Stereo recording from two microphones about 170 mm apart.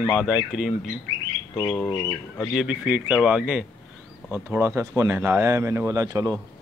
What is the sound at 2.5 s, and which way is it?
Speech, 5° right (ahead or behind).